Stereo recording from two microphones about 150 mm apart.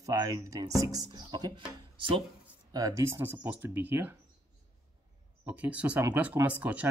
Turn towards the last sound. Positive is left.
turn(degrees=-10)  # may be behind; listen again after turning